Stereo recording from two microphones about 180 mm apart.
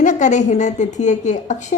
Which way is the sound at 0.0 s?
45° left (ahead or behind).